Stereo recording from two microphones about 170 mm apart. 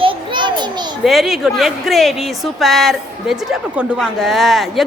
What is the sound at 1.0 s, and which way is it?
Speech, centre (ahead or behind).